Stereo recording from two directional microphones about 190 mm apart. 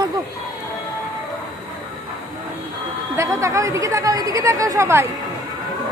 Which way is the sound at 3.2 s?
15° right (ahead or behind).